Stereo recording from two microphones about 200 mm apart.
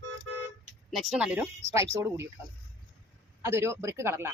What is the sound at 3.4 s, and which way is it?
Speech, 15° right (ahead or behind).